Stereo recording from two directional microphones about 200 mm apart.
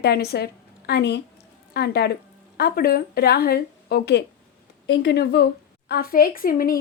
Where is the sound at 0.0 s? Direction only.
55° left (ahead or behind).